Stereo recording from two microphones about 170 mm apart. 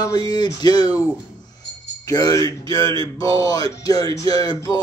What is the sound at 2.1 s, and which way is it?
Speech, 20° left (ahead or behind).